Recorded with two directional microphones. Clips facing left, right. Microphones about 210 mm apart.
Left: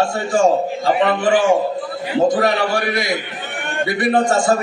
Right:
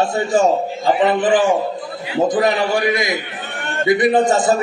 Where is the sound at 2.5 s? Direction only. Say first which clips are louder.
Right 2 dB; 20° right (ahead or behind).